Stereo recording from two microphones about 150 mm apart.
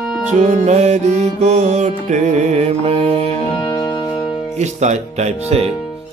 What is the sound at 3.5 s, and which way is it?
Music, 35° left (ahead or behind).